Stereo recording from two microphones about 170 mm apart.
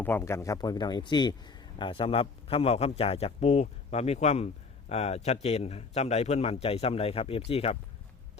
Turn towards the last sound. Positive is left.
turn(degrees=35)  # may be behind; listen again after turning